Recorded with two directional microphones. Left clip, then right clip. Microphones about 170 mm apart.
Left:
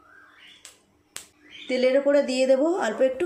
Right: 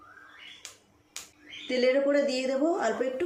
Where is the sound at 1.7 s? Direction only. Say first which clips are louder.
Left 4 dB; 45° left (ahead or behind).